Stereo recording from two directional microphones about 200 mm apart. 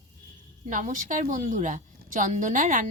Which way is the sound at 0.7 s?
40° right (ahead or behind).